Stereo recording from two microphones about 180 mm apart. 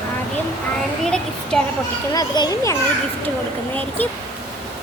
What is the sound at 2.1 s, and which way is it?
Speech, 20° left (ahead or behind).